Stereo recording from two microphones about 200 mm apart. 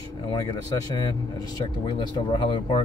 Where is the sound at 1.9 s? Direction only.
20° left (ahead or behind).